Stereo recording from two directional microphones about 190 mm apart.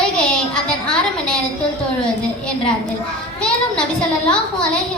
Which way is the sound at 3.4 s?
5° left (ahead or behind).